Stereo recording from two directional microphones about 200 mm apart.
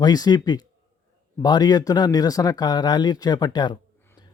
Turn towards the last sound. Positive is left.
turn(degrees=20)  # may be behind; listen again after turning